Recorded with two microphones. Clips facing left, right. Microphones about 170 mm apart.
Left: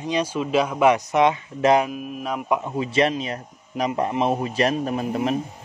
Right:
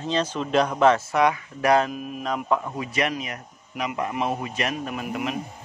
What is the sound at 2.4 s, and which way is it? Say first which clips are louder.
Speech: left 2 dB; 20° left (ahead or behind).